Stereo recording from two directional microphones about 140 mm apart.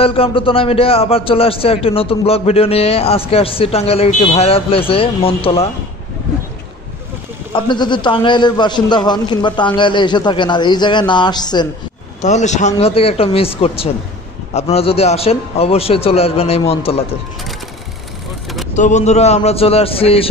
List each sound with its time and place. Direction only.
0.0 s a man's voice: 40° left (ahead or behind)
7.5 s a man's voice: 35° left (ahead or behind)
12.2 s a man's voice: 55° left (ahead or behind)
18.8 s a man's voice: 60° left (ahead or behind); by 20.2 s 45° left (ahead or behind)